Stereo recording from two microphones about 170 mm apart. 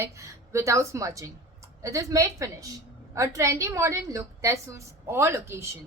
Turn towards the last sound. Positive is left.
turn(degrees=-15)  # may be behind; listen again after turning